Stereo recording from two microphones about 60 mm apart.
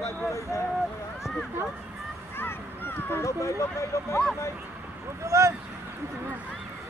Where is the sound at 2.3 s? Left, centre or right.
Left.